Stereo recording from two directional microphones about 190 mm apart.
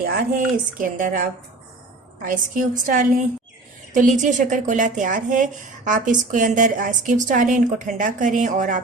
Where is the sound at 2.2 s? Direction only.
45° right (ahead or behind).